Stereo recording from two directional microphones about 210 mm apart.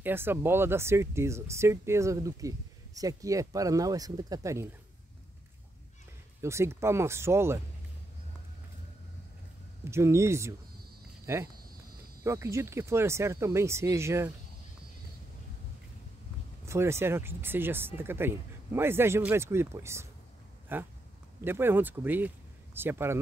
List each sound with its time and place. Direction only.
0.0 s speech: 10° right (ahead or behind)
6.4 s speech: 15° right (ahead or behind)
9.8 s speech: 15° right (ahead or behind)
16.6 s speech: 10° right (ahead or behind)